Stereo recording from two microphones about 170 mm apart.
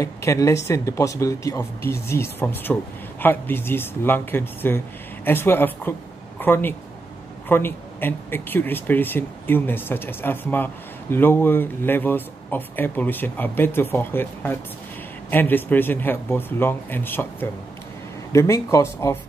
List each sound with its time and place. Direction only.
0.0 s speech: 20° left (ahead or behind)